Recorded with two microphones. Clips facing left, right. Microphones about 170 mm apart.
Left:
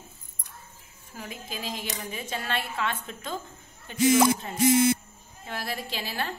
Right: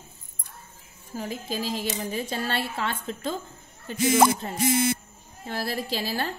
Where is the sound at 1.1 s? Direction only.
35° right (ahead or behind).